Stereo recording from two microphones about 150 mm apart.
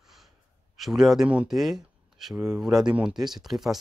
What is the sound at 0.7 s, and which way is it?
Speech, centre (ahead or behind).